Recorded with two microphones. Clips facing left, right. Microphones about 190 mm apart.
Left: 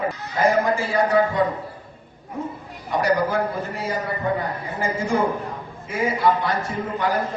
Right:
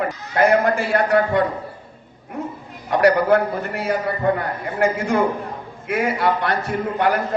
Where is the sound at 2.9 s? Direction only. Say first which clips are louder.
Right 5 dB; 65° right (ahead or behind).